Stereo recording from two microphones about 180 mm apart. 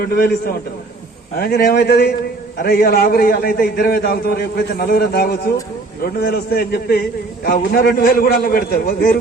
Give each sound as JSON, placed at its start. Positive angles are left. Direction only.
{"t": 0.0, "sound": "a man's voice", "side_deg": 55}